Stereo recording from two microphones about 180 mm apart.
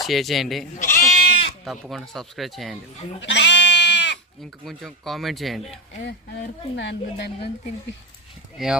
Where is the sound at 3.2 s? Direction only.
75° left (ahead or behind).